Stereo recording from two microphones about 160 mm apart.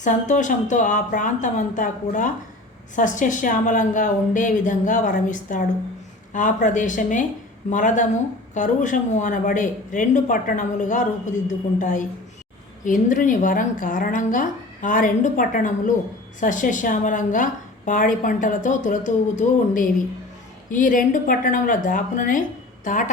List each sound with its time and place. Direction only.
0.0 s a woman's voice: 50° left (ahead or behind)